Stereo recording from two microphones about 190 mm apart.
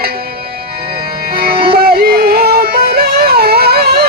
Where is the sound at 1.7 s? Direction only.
55° right (ahead or behind).